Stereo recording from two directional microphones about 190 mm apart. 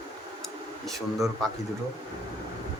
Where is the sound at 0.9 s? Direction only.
Centre (ahead or behind).